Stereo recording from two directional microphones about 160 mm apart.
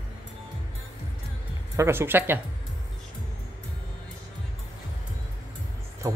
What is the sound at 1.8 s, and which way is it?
Speech, 15° right (ahead or behind).